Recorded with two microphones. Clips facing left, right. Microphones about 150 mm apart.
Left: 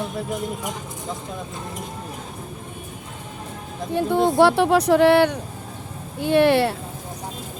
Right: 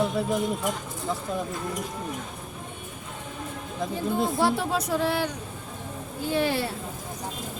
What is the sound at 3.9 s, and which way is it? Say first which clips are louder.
Speech: left 9 dB; 70° left (ahead or behind).